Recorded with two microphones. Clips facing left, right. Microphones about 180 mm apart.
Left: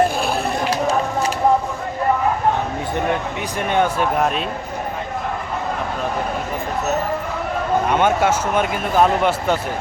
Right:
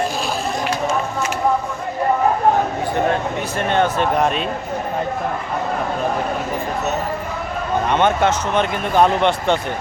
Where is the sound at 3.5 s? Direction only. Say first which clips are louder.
Even; 15° left (ahead or behind).